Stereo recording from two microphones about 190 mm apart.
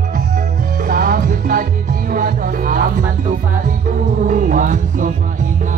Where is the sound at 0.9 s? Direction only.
50° right (ahead or behind).